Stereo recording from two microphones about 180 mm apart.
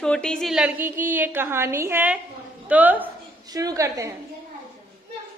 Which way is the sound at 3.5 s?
20° right (ahead or behind).